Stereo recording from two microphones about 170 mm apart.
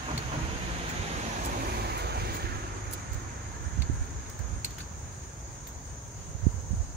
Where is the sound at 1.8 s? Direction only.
70° right (ahead or behind).